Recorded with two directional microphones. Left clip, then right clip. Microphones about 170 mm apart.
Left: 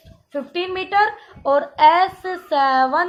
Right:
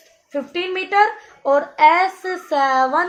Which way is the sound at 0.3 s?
40° right (ahead or behind).